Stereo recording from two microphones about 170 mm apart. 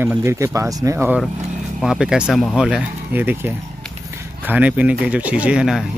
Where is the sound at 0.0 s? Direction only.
10° right (ahead or behind).